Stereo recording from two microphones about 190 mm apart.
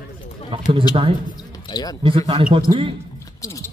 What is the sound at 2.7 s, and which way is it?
Speech, 35° right (ahead or behind).